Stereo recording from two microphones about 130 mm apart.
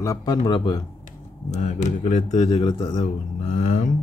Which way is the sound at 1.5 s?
65° left (ahead or behind).